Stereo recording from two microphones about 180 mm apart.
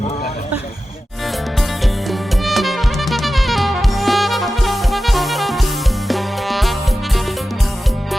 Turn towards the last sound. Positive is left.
turn(degrees=0)  # may be behind; listen again after turning